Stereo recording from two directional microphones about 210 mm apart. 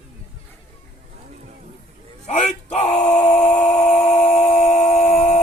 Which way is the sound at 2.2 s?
35° left (ahead or behind).